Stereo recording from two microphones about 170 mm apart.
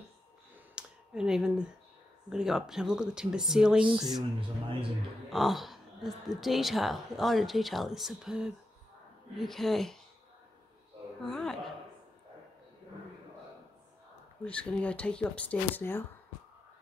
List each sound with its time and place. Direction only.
0.7 s a sound: 5° right (ahead or behind)
2.2 s a woman's voice: 5° right (ahead or behind)
3.8 s speech: 30° right (ahead or behind)
5.3 s a woman's voice: centre (ahead or behind)
11.2 s a sound: centre (ahead or behind)
14.4 s speech: 5° left (ahead or behind)